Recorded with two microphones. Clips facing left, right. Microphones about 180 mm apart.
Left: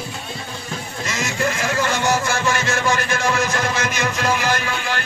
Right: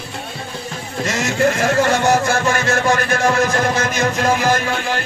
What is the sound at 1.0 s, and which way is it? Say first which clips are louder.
Speech: right 6 dB; 60° right (ahead or behind).